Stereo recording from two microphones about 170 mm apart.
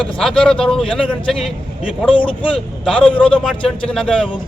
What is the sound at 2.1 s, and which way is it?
Speech, 30° left (ahead or behind).